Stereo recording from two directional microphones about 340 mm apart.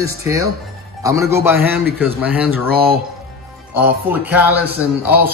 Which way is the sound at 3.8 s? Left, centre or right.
Centre.